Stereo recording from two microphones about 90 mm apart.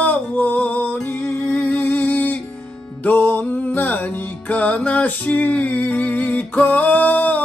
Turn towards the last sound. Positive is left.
turn(degrees=20)  # may be behind; listen again after turning